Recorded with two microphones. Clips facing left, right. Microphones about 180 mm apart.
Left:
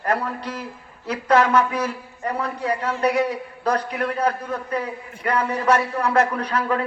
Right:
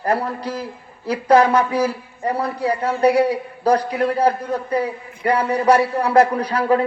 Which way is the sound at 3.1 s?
10° right (ahead or behind).